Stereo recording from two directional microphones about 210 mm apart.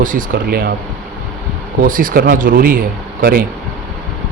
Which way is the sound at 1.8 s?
40° right (ahead or behind).